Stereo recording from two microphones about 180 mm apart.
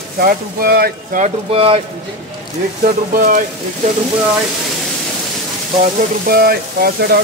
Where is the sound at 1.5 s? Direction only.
30° right (ahead or behind).